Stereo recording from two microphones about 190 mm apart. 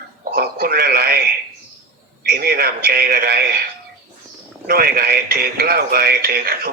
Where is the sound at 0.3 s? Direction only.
55° right (ahead or behind).